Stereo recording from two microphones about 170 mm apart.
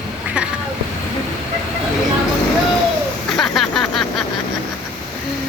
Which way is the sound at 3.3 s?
Centre (ahead or behind).